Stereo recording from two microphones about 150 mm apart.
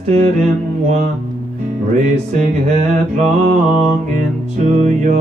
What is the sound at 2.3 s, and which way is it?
Music, 55° right (ahead or behind).